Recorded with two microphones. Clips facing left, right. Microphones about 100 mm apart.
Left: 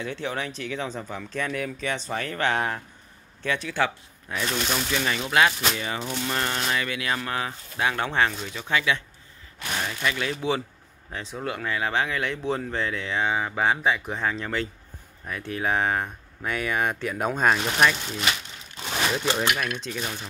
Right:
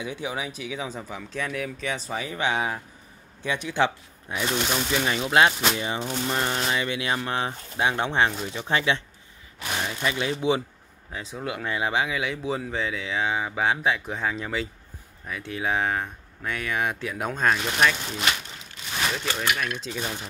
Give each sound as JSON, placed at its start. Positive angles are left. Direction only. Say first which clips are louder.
{"t": 0.0, "sound": "speech", "louder": "left 1 dB", "side_deg": -10}
{"t": 3.4, "sound": "speech", "louder": "right 1 dB", "side_deg": -20}
{"t": 4.6, "sound": "speech", "louder": "right 1 dB", "side_deg": -5}
{"t": 5.0, "sound": "speech", "louder": "right 2 dB", "side_deg": -25}
{"t": 9.6, "sound": "a sound", "louder": "right 1 dB", "side_deg": -10}
{"t": 9.9, "sound": "speech", "louder": "right 2 dB", "side_deg": -20}
{"t": 11.1, "sound": "speech", "louder": "left 1 dB", "side_deg": -5}
{"t": 11.6, "sound": "speech", "louder": "right 1 dB", "side_deg": -20}
{"t": 19.1, "sound": "speech", "louder": "left 4 dB", "side_deg": 20}
{"t": 19.4, "sound": "speech", "louder": "left 1 dB", "side_deg": 5}